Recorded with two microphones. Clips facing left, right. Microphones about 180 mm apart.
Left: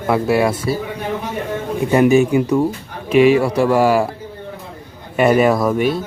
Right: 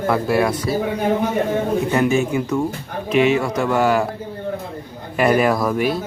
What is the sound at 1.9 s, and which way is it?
Speech, 15° left (ahead or behind).